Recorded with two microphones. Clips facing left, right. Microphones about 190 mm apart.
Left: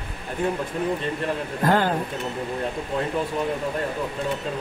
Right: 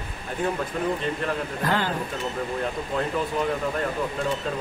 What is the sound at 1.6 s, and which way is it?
Speech, 50° left (ahead or behind).